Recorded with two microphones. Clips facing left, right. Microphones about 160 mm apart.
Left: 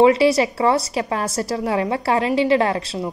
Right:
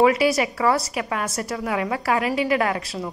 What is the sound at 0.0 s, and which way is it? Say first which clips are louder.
A woman's voice: left 4 dB; 25° left (ahead or behind).